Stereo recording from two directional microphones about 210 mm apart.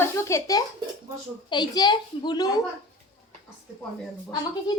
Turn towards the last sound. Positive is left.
turn(degrees=20)  # may be behind; listen again after turning